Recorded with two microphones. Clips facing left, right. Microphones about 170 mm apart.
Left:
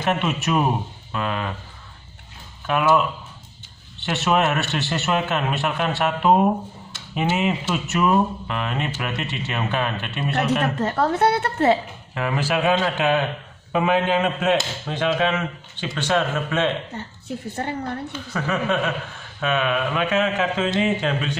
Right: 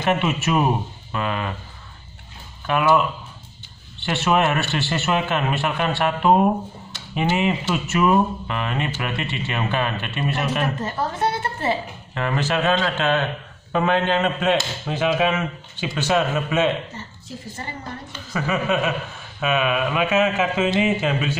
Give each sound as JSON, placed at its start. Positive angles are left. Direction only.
{"t": 0.0, "sound": "a man's voice", "side_deg": 0}
{"t": 2.6, "sound": "a man's voice", "side_deg": 0}
{"t": 10.6, "sound": "a woman's voice", "side_deg": 65}
{"t": 12.1, "sound": "a man's voice", "side_deg": 5}
{"t": 16.9, "sound": "a woman's voice", "side_deg": 60}
{"t": 18.1, "sound": "a man's voice", "side_deg": -5}